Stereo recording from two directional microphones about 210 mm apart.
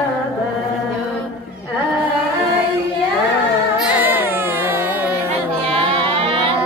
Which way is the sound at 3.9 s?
10° right (ahead or behind).